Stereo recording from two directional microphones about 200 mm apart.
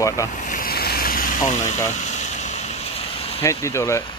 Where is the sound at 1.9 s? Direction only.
35° left (ahead or behind).